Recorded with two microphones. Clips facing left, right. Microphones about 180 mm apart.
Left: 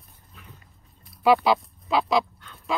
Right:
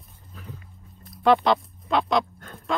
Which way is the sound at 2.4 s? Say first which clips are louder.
Right 6 dB; 50° right (ahead or behind).